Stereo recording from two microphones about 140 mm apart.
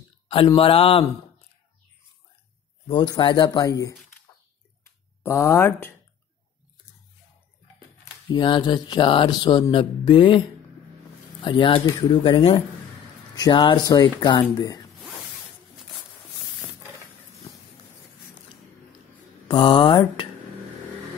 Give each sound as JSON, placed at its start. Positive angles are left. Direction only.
{"t": 0.6, "sound": "mantra", "side_deg": 40}
{"t": 2.9, "sound": "mantra", "side_deg": 35}
{"t": 5.2, "sound": "speech", "side_deg": 20}
{"t": 8.0, "sound": "mantra", "side_deg": 35}
{"t": 11.4, "sound": "mantra", "side_deg": 35}
{"t": 14.6, "sound": "speech", "side_deg": 25}
{"t": 19.4, "sound": "mantra", "side_deg": 35}